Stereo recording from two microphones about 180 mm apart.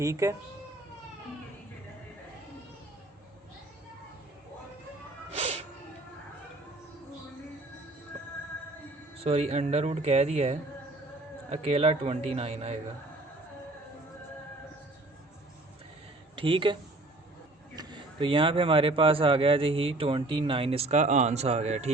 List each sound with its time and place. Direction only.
0.0 s speech: 20° right (ahead or behind)
5.3 s a sound: 35° right (ahead or behind)
9.1 s a man's voice: 35° right (ahead or behind)
16.3 s speech: 30° right (ahead or behind)
17.7 s a man's voice: 25° right (ahead or behind)